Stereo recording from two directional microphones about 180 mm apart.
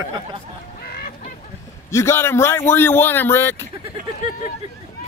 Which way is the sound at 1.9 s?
15° left (ahead or behind).